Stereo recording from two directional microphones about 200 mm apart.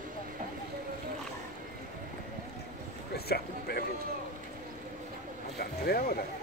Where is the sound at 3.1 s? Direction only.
50° left (ahead or behind).